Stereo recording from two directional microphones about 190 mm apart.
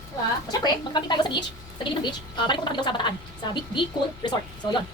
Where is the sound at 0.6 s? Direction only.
25° left (ahead or behind).